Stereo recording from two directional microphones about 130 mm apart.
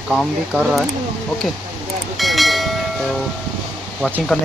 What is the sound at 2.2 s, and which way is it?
Train, centre (ahead or behind).